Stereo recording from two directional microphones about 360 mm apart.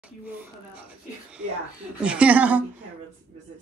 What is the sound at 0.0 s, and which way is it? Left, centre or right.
Speech, centre.